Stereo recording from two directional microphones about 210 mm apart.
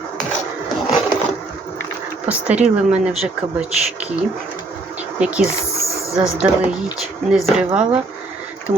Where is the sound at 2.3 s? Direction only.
5° right (ahead or behind).